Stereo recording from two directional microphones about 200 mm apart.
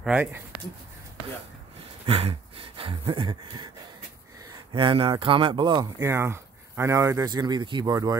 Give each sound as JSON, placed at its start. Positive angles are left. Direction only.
{"t": 0.0, "sound": "speech", "side_deg": -5}
{"t": 2.0, "sound": "a sound", "side_deg": -30}
{"t": 4.7, "sound": "speech", "side_deg": -25}